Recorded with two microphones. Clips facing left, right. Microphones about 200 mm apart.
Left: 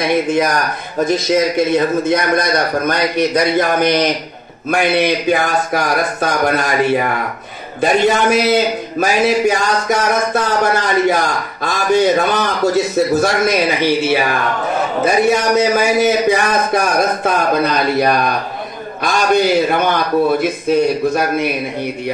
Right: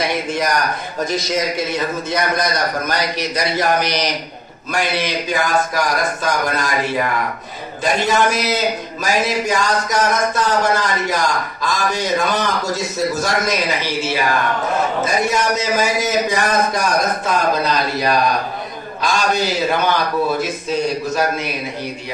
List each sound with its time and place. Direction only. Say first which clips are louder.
0.0 s a man's voice: left 6 dB; 55° left (ahead or behind)
2.0 s a man's voice: left 5 dB; 55° left (ahead or behind)